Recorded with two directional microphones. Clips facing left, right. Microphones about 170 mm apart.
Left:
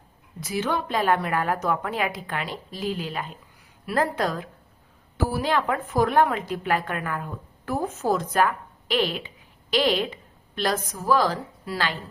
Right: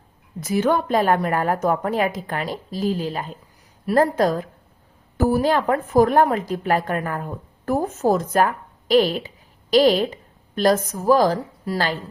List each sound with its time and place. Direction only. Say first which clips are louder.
0.3 s a woman's voice: right 7 dB; 50° right (ahead or behind)